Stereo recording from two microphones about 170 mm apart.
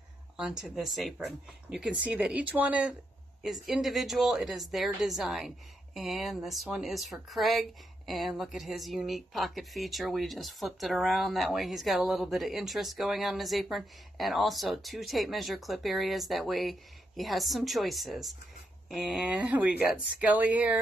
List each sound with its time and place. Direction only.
0.4 s a woman's voice: 5° right (ahead or behind)